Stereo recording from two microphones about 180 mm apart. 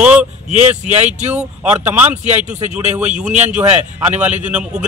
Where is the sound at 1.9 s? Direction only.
10° right (ahead or behind).